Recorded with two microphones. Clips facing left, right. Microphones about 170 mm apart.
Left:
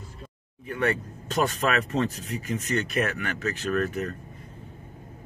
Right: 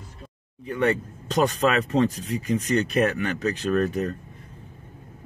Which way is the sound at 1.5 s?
15° right (ahead or behind).